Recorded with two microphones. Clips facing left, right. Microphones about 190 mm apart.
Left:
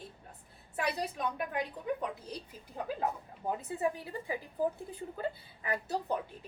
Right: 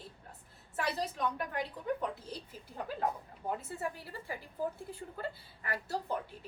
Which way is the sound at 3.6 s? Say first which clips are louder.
Left 6 dB; 20° left (ahead or behind).